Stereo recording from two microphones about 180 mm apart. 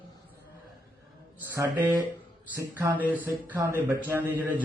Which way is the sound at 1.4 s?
10° right (ahead or behind).